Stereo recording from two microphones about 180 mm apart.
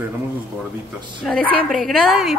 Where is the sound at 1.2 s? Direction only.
5° left (ahead or behind).